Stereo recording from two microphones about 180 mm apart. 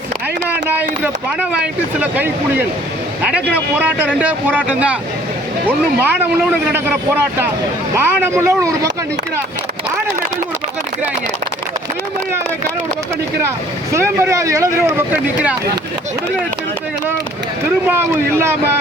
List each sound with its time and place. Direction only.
0.4 s speech: 10° right (ahead or behind)
13.9 s speech: 15° right (ahead or behind)
17.8 s speech: 15° right (ahead or behind)